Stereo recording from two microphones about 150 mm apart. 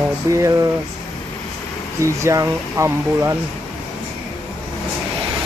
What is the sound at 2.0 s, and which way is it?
Speech, 20° right (ahead or behind).